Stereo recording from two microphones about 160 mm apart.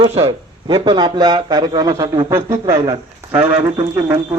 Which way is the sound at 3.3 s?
10° right (ahead or behind).